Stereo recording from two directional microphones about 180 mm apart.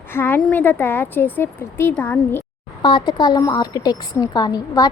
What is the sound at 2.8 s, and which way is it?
A woman's voice, 25° left (ahead or behind).